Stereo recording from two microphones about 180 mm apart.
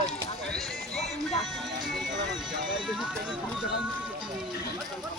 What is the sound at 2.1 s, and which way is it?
Music, 80° right.